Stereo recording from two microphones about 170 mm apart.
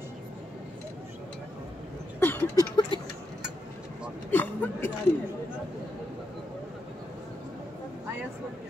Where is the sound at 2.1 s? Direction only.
15° left (ahead or behind).